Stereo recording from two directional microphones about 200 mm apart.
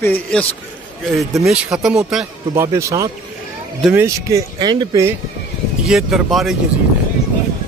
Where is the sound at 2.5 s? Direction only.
15° right (ahead or behind).